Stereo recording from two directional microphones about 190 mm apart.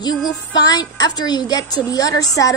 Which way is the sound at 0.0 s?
20° left (ahead or behind).